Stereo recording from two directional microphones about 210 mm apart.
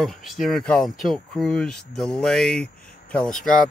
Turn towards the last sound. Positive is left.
turn(degrees=0)  # may be behind; listen again after turning